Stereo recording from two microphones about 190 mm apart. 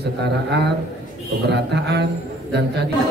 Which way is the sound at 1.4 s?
60° right (ahead or behind).